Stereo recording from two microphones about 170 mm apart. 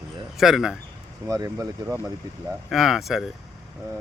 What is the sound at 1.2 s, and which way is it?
Speech, 20° right (ahead or behind).